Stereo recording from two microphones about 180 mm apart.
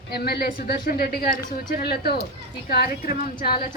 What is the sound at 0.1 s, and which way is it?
A woman's voice, 60° left (ahead or behind).